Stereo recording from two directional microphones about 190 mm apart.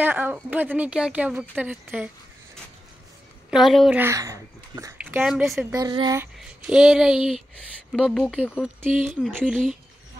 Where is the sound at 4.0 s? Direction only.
15° right (ahead or behind).